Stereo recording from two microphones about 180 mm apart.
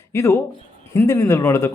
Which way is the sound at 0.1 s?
15° left (ahead or behind).